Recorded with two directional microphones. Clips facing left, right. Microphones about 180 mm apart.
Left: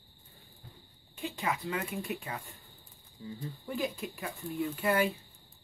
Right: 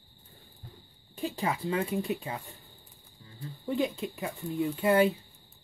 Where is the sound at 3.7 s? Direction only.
20° right (ahead or behind).